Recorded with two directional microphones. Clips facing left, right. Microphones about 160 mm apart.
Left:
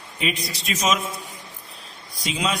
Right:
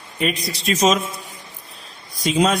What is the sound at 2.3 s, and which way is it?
Speech, 40° right (ahead or behind).